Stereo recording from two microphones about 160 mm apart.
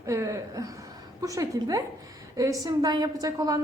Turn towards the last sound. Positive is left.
turn(degrees=-20)  # may be behind; listen again after turning